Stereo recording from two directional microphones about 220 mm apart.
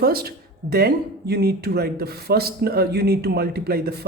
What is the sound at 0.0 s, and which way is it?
Speech, 45° right (ahead or behind).